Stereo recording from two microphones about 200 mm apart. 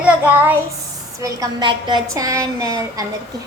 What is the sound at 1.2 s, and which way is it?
A woman's voice, 20° right (ahead or behind).